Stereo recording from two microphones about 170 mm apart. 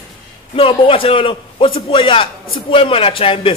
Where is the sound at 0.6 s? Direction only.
35° left (ahead or behind).